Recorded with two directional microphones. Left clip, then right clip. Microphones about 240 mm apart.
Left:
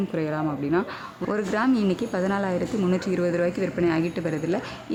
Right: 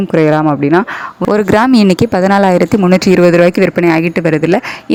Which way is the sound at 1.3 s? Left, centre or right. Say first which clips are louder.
Right 15 dB; right.